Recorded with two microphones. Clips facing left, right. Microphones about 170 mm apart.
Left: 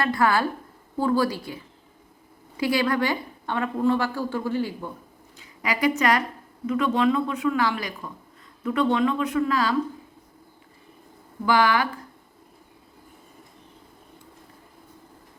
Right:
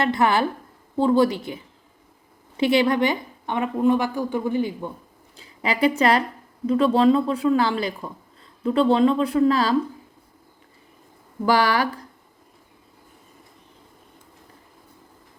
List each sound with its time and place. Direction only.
0.0 s a woman's voice: 20° right (ahead or behind)
5.4 s a woman's voice: 30° right (ahead or behind)
11.4 s speech: 35° right (ahead or behind)